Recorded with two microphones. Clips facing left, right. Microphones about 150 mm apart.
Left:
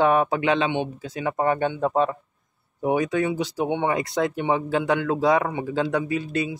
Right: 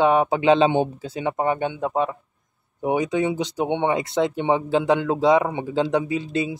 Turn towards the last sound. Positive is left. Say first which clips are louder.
# right 1 dB
turn(degrees=-25)  # may be behind; listen again after turning